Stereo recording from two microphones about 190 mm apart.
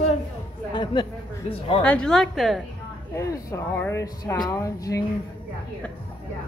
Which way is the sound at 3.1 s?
15° left (ahead or behind).